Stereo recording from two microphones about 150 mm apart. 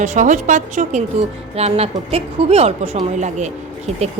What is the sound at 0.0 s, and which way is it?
A woman's voice, 55° right (ahead or behind).